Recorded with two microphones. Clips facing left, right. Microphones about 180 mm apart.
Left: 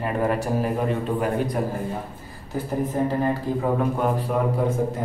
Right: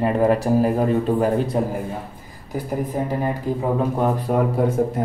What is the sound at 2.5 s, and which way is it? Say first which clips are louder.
Speech: right 1 dB; 15° right (ahead or behind).